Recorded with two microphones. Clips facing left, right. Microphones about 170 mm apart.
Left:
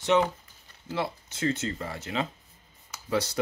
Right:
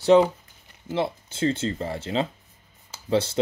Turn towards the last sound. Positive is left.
turn(degrees=-25)  # may be behind; listen again after turning